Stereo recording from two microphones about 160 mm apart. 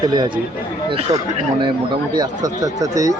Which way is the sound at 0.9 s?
40° right (ahead or behind).